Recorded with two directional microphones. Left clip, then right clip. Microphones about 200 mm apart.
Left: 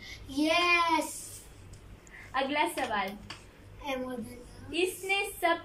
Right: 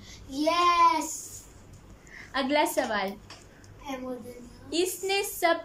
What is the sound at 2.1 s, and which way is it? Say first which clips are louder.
Speech: right 3 dB; 30° right (ahead or behind).